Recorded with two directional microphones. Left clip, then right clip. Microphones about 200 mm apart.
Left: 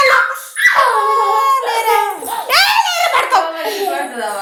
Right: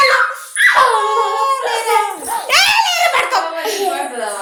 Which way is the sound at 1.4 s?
20° left (ahead or behind).